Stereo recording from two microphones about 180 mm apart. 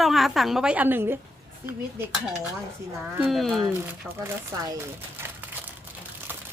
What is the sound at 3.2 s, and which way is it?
Speech, centre (ahead or behind).